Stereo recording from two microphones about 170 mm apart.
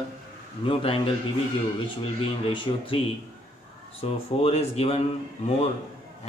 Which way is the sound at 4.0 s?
35° left (ahead or behind).